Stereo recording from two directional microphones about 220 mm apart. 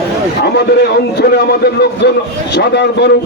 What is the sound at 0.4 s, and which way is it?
A man's voice, 45° left (ahead or behind).